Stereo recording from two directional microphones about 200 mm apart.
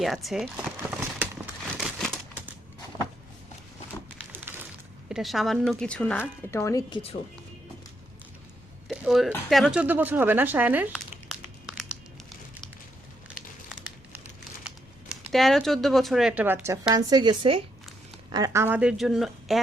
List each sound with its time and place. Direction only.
0.0 s speech: centre (ahead or behind)
0.8 s a sound: 10° right (ahead or behind)
1.6 s a sound: centre (ahead or behind)
4.3 s a sound: 10° right (ahead or behind)
5.0 s speech: centre (ahead or behind); by 7.0 s 15° left (ahead or behind)
8.9 s speech: centre (ahead or behind)
10.9 s crumpling: centre (ahead or behind)
13.7 s crumpling: 5° right (ahead or behind)
15.3 s speech: centre (ahead or behind)
16.9 s a woman's voice: 20° right (ahead or behind); by 19.6 s centre (ahead or behind)